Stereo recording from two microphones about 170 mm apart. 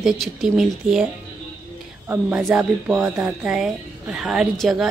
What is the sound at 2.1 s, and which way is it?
Speech, 10° right (ahead or behind).